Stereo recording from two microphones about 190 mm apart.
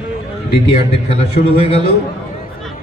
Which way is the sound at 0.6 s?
30° left (ahead or behind).